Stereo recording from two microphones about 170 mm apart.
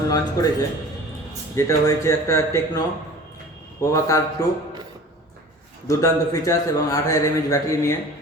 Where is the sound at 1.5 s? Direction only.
15° left (ahead or behind).